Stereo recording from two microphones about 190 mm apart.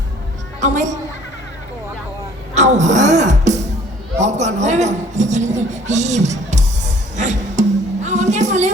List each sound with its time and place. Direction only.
0.6 s a man's voice: 40° right (ahead or behind)
2.6 s music: 40° right (ahead or behind)
4.2 s a man's voice: 40° right (ahead or behind)
7.2 s music: 40° right (ahead or behind)